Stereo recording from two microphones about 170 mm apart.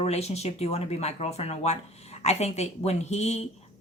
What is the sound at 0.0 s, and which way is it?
A woman's voice, 40° left (ahead or behind).